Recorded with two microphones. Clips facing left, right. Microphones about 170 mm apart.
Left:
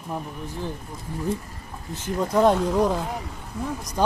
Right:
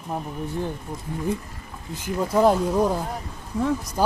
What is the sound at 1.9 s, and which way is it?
Speech, 10° right (ahead or behind).